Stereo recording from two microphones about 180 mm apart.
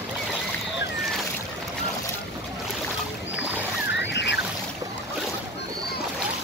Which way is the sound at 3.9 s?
75° left (ahead or behind).